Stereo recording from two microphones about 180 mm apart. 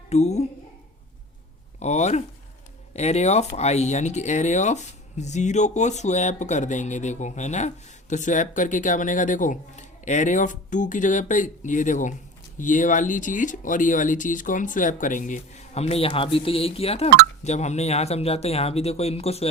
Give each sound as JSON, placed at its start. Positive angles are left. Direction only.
{"t": 0.1, "sound": "speech", "side_deg": 40}
{"t": 1.8, "sound": "speech", "side_deg": 40}